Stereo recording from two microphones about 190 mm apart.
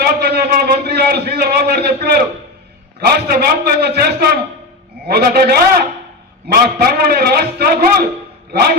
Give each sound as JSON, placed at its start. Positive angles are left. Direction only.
{"t": 0.0, "sound": "a man's voice", "side_deg": -55}
{"t": 3.2, "sound": "a man's voice", "side_deg": -55}